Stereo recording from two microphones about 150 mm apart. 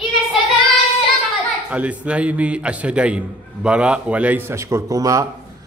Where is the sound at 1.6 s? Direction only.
10° right (ahead or behind).